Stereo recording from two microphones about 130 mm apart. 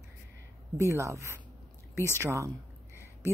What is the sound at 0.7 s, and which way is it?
Speech, 25° right (ahead or behind).